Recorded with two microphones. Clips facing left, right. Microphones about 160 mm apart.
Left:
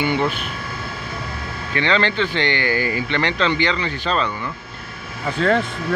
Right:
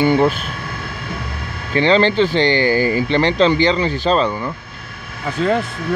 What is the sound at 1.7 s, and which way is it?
Speech, 35° right (ahead or behind).